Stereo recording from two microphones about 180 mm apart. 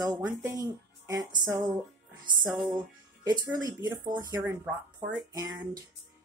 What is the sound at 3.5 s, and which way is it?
Music, 20° right (ahead or behind).